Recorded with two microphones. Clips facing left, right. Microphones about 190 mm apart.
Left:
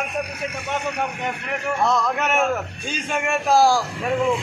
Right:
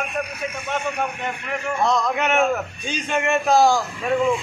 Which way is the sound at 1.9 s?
5° left (ahead or behind).